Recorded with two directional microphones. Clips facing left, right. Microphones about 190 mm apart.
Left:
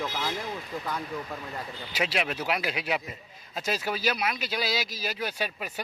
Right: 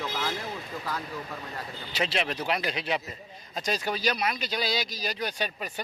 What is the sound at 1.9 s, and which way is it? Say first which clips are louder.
Speech: even; 10° left (ahead or behind).